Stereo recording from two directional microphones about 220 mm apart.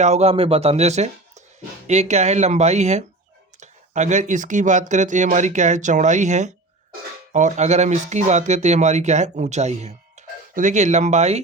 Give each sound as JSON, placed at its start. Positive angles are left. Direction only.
{"t": 0.0, "sound": "speech", "side_deg": -30}